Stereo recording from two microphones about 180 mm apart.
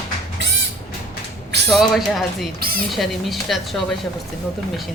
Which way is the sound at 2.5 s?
55° right (ahead or behind).